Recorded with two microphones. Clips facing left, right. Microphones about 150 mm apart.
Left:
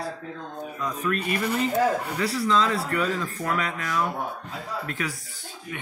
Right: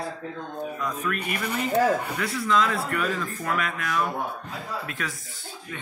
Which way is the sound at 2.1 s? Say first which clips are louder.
Left 1 dB; 30° left (ahead or behind).